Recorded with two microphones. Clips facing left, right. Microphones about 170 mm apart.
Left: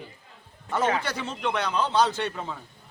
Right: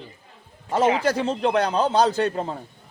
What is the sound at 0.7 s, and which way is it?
A man's voice, 30° right (ahead or behind).